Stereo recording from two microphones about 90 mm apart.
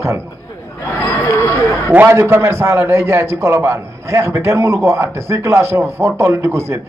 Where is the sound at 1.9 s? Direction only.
25° right (ahead or behind).